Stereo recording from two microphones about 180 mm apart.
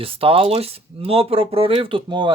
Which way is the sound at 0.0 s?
30° right (ahead or behind).